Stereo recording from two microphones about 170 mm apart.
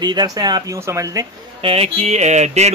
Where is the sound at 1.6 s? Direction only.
35° right (ahead or behind).